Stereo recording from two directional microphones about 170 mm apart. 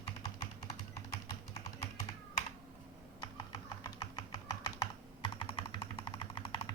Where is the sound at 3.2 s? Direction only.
25° left (ahead or behind).